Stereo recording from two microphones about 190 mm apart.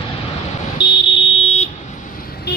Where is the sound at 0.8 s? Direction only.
25° left (ahead or behind).